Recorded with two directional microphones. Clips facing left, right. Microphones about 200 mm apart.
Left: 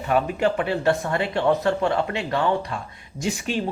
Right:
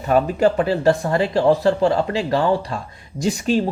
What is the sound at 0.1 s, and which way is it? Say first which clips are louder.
Speech: right 5 dB; 40° right (ahead or behind).